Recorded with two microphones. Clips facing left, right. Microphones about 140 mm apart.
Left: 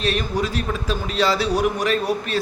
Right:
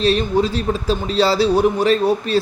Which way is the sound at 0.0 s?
30° right (ahead or behind).